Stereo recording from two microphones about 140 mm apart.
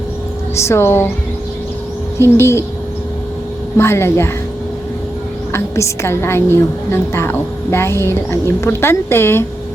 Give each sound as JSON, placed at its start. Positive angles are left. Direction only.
{"t": 0.5, "sound": "a woman's voice", "side_deg": 20}
{"t": 2.1, "sound": "speech", "side_deg": 20}
{"t": 3.8, "sound": "a woman's voice", "side_deg": 20}
{"t": 5.5, "sound": "a woman's voice", "side_deg": 20}